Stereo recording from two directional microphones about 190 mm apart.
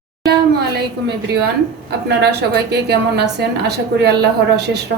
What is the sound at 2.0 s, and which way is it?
Speech, 60° right (ahead or behind).